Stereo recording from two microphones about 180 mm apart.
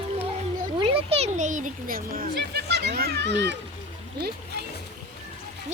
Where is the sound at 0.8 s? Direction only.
30° right (ahead or behind); by 3.6 s 75° right (ahead or behind).